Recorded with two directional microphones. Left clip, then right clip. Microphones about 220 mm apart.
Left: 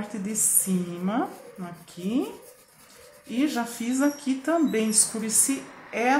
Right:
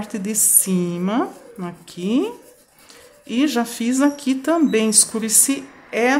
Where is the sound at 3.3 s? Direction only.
50° right (ahead or behind).